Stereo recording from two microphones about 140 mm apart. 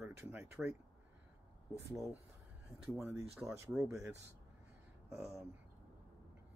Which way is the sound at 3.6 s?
20° right (ahead or behind).